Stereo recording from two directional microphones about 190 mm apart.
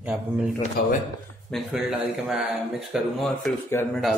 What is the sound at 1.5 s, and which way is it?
Speech, centre (ahead or behind).